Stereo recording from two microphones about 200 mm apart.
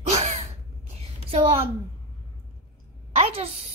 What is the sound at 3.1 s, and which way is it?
Speech, 30° right (ahead or behind).